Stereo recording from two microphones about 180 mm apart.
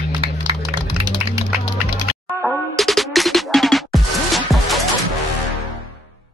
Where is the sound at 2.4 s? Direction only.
Centre (ahead or behind).